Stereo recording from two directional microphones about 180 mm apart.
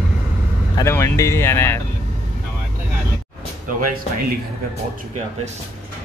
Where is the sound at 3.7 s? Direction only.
50° right (ahead or behind).